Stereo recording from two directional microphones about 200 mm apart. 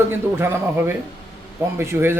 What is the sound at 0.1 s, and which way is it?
A man's voice, 10° right (ahead or behind).